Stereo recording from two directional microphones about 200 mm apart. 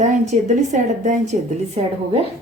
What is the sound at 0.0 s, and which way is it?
A woman's voice, 35° right (ahead or behind).